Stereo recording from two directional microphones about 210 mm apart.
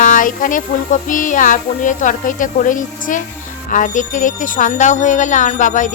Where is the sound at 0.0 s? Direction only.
40° left (ahead or behind).